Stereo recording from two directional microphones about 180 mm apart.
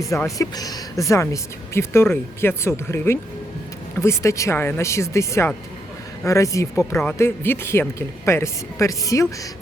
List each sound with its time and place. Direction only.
0.0 s speech: 15° left (ahead or behind)